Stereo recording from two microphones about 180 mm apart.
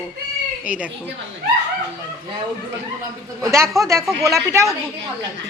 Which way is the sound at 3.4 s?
15° right (ahead or behind).